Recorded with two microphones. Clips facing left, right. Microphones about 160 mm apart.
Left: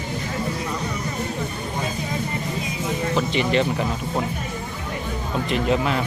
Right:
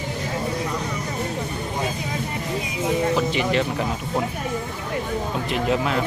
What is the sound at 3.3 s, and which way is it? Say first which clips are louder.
Speech: left 1 dB; 5° right (ahead or behind).